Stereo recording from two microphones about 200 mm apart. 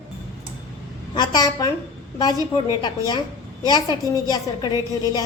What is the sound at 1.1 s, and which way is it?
Speech, 20° left (ahead or behind).